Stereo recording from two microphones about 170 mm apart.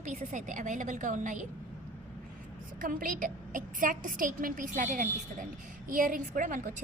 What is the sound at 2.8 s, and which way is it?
A woman's voice, 55° right (ahead or behind).